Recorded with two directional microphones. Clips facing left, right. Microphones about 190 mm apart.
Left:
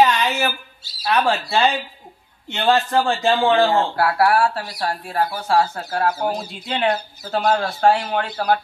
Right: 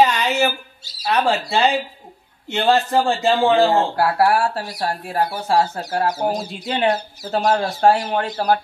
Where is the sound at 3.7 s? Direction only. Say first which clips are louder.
Right 1 dB; 35° right (ahead or behind).